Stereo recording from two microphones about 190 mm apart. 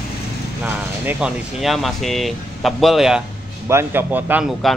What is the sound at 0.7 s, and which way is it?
Speech, 5° right (ahead or behind).